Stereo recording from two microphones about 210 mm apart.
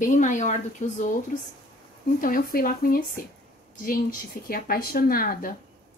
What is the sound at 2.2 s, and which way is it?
A woman's voice, 45° left (ahead or behind).